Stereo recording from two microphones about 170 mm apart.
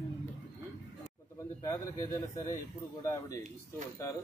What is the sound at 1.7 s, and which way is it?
A man's voice, 20° left (ahead or behind).